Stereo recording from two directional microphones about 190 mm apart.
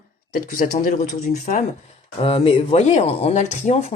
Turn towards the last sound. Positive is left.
turn(degrees=35)  # may be behind; listen again after turning